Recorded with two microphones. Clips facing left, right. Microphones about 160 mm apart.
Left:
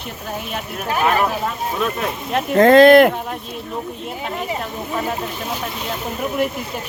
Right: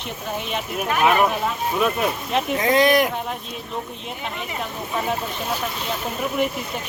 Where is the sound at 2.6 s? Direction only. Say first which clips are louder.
Left 10 dB; 60° left (ahead or behind).